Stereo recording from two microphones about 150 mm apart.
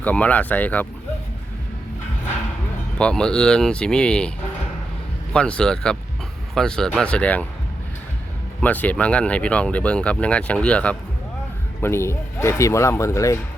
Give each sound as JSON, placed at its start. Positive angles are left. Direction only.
{"t": 0.0, "sound": "speech", "side_deg": 10}
{"t": 3.0, "sound": "speech", "side_deg": 5}
{"t": 5.3, "sound": "speech", "side_deg": 5}
{"t": 8.6, "sound": "speech", "side_deg": 10}